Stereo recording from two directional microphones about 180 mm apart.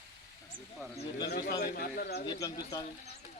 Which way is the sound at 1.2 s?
60° left (ahead or behind).